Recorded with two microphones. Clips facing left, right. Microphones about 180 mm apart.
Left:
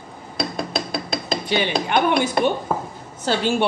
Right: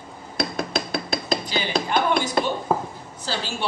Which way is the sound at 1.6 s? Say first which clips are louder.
Left 3 dB; 65° left (ahead or behind).